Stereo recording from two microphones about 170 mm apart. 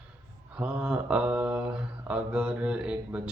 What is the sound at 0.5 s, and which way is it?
Mantra, 5° right (ahead or behind).